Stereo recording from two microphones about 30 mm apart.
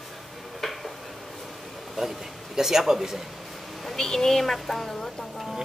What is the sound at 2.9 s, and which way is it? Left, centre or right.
Speech, centre.